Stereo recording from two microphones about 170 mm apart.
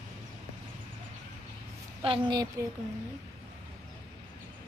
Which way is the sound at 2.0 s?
30° right (ahead or behind).